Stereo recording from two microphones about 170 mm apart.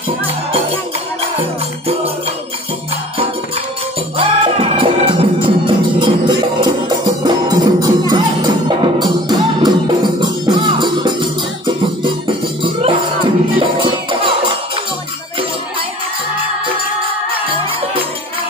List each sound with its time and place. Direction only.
4.2 s music: 30° right (ahead or behind)